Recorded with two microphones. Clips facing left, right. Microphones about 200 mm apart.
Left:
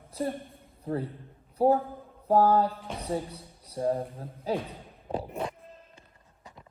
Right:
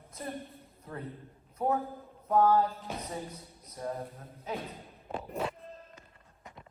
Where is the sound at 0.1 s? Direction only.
30° left (ahead or behind).